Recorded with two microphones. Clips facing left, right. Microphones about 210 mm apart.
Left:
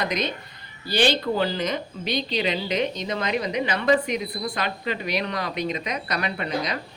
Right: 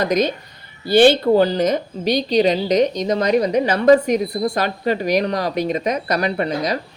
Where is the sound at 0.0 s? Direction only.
45° right (ahead or behind).